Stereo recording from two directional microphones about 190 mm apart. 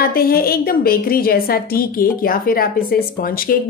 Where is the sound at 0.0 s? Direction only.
50° left (ahead or behind).